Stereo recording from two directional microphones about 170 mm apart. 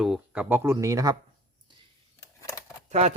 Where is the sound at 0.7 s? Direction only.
20° right (ahead or behind).